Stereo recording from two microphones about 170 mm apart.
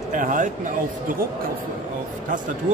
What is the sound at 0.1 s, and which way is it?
Speech, 50° right (ahead or behind).